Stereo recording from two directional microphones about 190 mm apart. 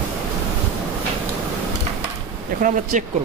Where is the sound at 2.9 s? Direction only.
40° right (ahead or behind).